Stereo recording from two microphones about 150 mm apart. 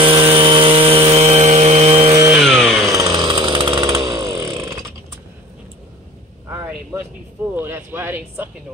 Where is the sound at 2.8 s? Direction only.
20° right (ahead or behind).